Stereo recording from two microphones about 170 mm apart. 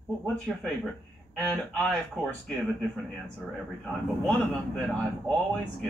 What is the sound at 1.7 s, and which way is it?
Speech, 5° left (ahead or behind).